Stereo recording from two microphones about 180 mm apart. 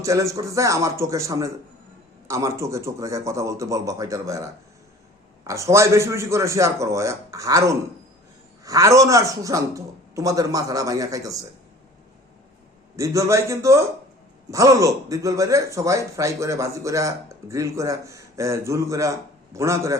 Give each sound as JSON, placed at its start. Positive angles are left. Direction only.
{"t": 0.0, "sound": "a man's voice", "side_deg": -15}
{"t": 5.5, "sound": "a man's voice", "side_deg": -15}
{"t": 13.0, "sound": "a man's voice", "side_deg": -15}